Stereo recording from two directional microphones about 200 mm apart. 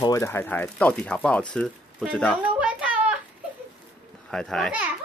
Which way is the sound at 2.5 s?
5° right (ahead or behind).